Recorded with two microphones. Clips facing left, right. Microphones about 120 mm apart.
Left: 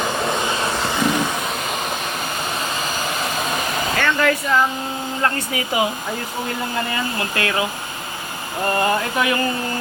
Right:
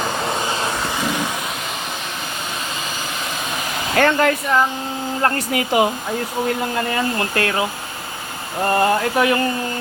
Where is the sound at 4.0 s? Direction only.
35° right (ahead or behind).